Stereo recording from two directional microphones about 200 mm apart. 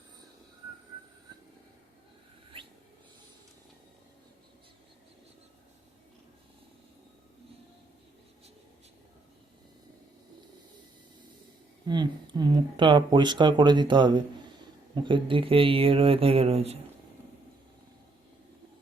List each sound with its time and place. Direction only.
11.9 s speech: 20° right (ahead or behind)